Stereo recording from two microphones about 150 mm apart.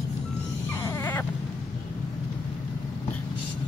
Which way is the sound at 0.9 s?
15° left (ahead or behind).